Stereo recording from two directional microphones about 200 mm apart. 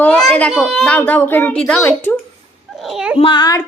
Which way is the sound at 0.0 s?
5° left (ahead or behind).